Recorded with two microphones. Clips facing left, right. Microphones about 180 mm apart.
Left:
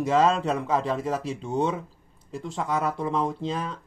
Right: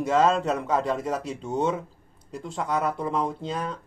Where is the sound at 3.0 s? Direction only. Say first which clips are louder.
Left 1 dB; 5° right (ahead or behind).